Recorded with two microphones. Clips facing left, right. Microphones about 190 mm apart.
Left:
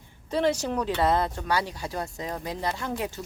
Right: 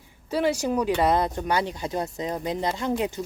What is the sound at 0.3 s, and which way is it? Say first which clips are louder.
Speech: right 1 dB; 10° right (ahead or behind).